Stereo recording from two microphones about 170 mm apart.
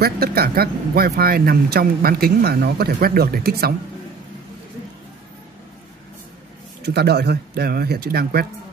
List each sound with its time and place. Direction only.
0.0 s speech: 65° right (ahead or behind)
6.8 s speech: 75° right (ahead or behind)